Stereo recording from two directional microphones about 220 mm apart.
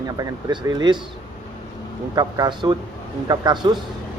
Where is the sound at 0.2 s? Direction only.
20° right (ahead or behind).